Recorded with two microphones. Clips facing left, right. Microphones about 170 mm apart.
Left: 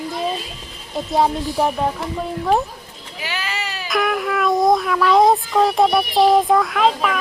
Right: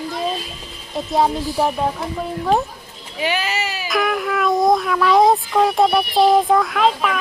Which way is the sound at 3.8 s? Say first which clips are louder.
Left 1 dB; centre (ahead or behind).